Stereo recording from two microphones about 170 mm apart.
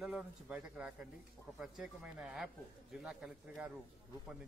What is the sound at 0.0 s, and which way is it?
Speech, 5° right (ahead or behind).